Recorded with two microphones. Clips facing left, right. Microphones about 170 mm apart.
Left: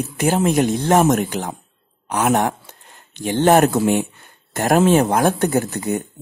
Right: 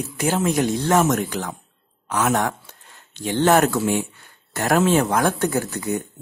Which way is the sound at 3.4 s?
20° left (ahead or behind).